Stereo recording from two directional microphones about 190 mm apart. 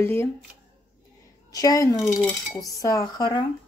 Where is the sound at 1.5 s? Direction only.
20° left (ahead or behind).